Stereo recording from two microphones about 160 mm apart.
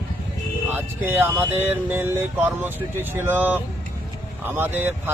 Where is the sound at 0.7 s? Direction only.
10° right (ahead or behind).